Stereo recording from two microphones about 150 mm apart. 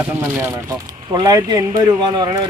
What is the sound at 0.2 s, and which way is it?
Speech, 15° right (ahead or behind).